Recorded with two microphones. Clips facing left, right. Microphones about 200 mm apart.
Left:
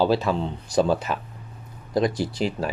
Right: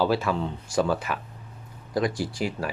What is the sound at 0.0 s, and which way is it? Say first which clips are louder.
Speech: left 3 dB; 25° left (ahead or behind).